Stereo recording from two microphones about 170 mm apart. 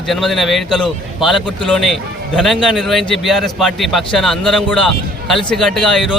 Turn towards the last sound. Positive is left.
turn(degrees=0)  # may be behind; listen again after turning